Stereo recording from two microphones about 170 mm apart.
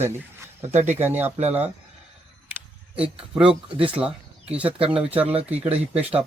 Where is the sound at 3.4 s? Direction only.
35° right (ahead or behind).